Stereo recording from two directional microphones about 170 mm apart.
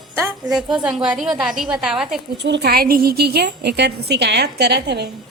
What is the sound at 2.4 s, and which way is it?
A woman's voice, 80° right.